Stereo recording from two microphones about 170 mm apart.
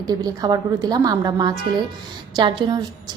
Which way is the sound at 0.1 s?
20° right (ahead or behind).